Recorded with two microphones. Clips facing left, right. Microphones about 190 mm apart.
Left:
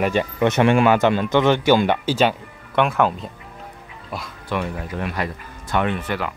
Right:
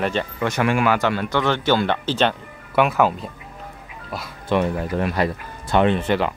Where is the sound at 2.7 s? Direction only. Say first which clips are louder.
Right 1 dB; 5° right (ahead or behind).